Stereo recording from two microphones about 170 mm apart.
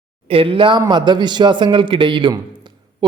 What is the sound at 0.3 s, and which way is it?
A man's voice, 30° right (ahead or behind).